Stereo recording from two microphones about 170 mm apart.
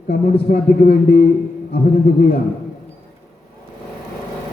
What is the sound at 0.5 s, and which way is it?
Speech, 70° left (ahead or behind).